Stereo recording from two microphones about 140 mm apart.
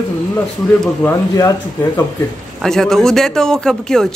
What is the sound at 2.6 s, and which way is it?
A woman's voice, 5° left (ahead or behind).